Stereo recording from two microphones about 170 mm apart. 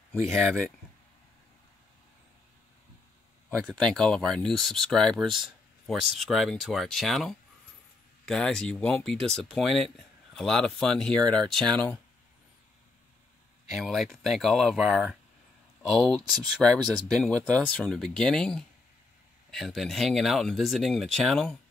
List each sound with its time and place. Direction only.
0.3 s speech: centre (ahead or behind)
3.4 s speech: 5° left (ahead or behind)
13.7 s speech: centre (ahead or behind)